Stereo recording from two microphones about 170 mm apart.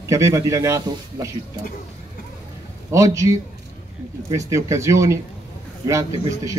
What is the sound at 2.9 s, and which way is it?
Speech, 20° right (ahead or behind).